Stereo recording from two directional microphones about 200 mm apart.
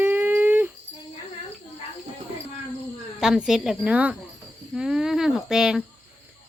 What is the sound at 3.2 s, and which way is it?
A woman's voice, 5° right (ahead or behind).